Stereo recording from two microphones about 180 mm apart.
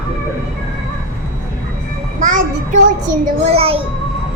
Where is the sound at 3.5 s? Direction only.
30° right (ahead or behind).